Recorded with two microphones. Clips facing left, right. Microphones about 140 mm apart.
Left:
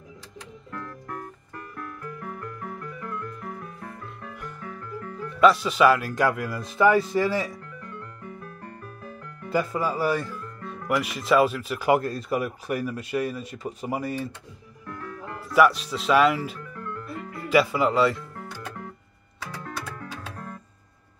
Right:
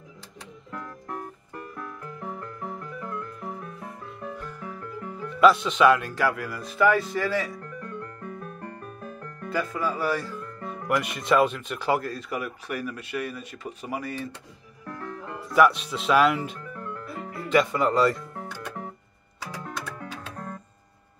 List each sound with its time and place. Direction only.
0.7 s music: 15° right (ahead or behind)
5.4 s speech: centre (ahead or behind)
6.1 s speech: 20° left (ahead or behind)
9.5 s speech: 30° left (ahead or behind)
10.0 s speech: 20° left (ahead or behind)
10.9 s speech: centre (ahead or behind)
11.9 s speech: 25° left (ahead or behind)
15.5 s speech: centre (ahead or behind)